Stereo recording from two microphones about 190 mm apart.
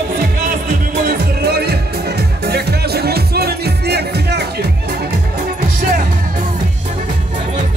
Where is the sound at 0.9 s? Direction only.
60° right (ahead or behind).